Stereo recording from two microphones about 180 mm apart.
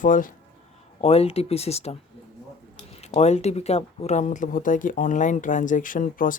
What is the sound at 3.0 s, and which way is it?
Speech, 35° left (ahead or behind).